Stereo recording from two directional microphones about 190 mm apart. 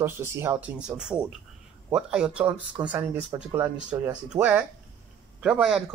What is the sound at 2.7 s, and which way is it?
Speech, 25° right (ahead or behind).